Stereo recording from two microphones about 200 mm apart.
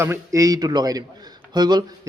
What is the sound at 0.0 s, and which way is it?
Speech, 15° right (ahead or behind).